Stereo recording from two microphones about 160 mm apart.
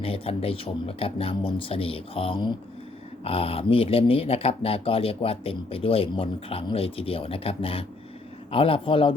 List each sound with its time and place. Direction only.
0.0 s speech: 35° left (ahead or behind)